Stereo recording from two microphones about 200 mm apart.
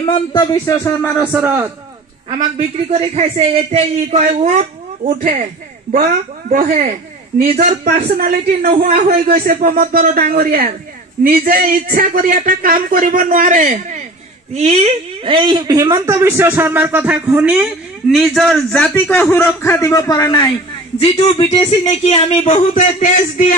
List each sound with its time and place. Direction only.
0.3 s a man's voice: 20° left (ahead or behind)
1.1 s a woman's voice: 5° right (ahead or behind)
2.9 s a woman's voice: 30° right (ahead or behind); by 20.4 s 20° left (ahead or behind)
21.0 s speech: 30° left (ahead or behind)